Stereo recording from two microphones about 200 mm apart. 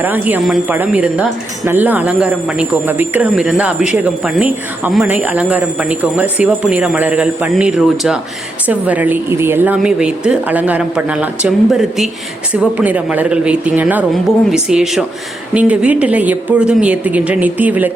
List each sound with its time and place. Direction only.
0.0 s speech: 10° right (ahead or behind)